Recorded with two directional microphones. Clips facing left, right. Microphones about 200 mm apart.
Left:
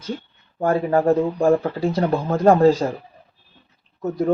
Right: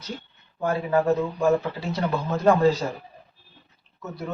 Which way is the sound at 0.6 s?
50° left (ahead or behind).